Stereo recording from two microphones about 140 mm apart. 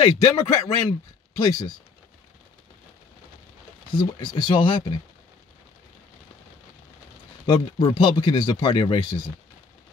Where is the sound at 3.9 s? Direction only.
35° left (ahead or behind).